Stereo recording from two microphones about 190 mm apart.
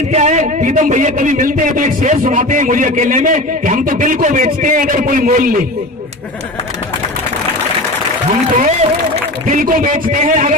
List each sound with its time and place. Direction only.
0.1 s a man's voice: 40° right (ahead or behind)
8.6 s a man's voice: 40° right (ahead or behind)